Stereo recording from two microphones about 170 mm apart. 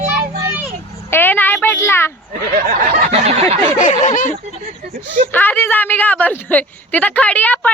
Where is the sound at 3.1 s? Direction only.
40° right (ahead or behind).